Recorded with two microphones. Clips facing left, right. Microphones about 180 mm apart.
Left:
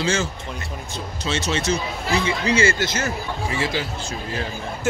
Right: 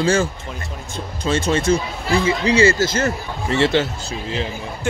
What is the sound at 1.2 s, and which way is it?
Speech, 50° right (ahead or behind).